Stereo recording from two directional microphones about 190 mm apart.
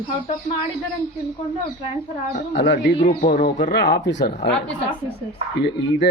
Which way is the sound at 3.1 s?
30° left (ahead or behind).